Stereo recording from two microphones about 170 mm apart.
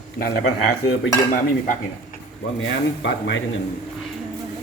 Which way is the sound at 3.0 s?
90° left.